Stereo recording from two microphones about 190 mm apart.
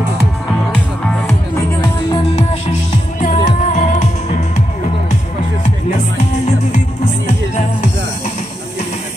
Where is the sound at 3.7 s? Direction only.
40° left (ahead or behind).